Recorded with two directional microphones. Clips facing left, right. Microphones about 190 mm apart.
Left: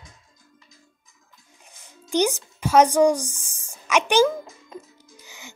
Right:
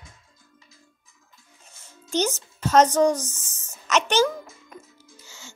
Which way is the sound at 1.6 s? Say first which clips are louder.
Left 4 dB; 15° left (ahead or behind).